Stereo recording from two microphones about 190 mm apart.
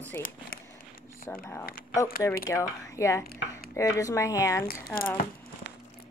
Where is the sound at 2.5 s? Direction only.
15° left (ahead or behind).